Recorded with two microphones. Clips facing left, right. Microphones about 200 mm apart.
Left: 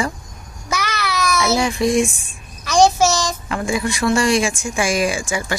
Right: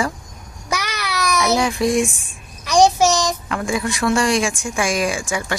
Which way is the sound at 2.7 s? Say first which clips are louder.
Even; 15° right (ahead or behind).